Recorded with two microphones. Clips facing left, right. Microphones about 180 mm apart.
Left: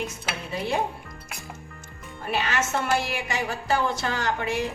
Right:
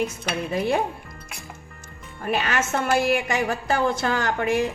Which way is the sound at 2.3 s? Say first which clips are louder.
Right 2 dB; 50° right (ahead or behind).